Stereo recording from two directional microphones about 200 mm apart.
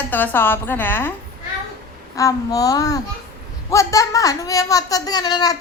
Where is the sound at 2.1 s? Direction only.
15° left (ahead or behind).